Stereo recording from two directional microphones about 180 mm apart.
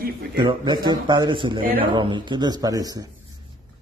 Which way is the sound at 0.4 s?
25° right (ahead or behind).